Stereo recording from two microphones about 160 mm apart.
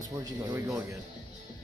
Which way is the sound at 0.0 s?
20° right (ahead or behind).